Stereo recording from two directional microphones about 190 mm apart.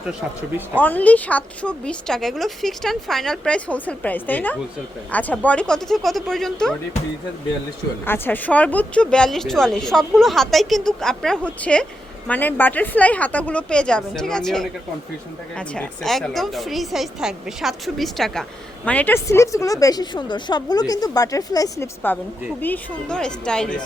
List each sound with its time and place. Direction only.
0.1 s speech: 10° right (ahead or behind)
0.8 s speech: 10° left (ahead or behind)
8.0 s a woman's voice: 10° left (ahead or behind)